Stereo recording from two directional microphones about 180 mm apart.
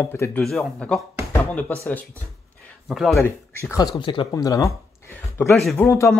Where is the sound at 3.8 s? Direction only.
25° left (ahead or behind).